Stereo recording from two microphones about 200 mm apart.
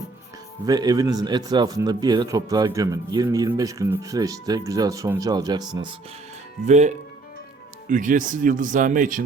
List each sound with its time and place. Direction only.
0.6 s a man's voice: 20° right (ahead or behind)
6.7 s speech: 35° right (ahead or behind)